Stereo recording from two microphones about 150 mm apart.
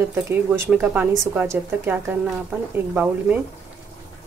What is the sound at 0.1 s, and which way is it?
Speech, 10° right (ahead or behind).